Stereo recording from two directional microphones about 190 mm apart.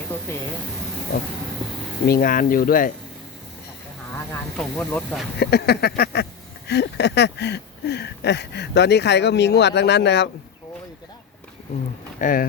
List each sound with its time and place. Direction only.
0.3 s speech: 15° left (ahead or behind)
2.0 s speech: 50° left (ahead or behind)
4.1 s speech: 10° left (ahead or behind)
5.4 s a sound: 60° left (ahead or behind)
12.2 s speech: 50° left (ahead or behind)